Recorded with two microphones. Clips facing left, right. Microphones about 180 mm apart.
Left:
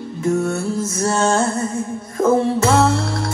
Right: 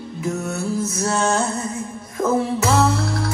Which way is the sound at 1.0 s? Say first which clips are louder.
Left 4 dB; 30° left (ahead or behind).